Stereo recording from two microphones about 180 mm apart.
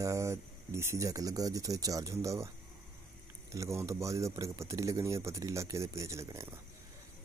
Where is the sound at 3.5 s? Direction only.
15° right (ahead or behind).